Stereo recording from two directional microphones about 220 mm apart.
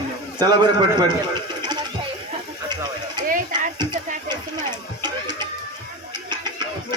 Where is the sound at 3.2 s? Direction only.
40° right (ahead or behind).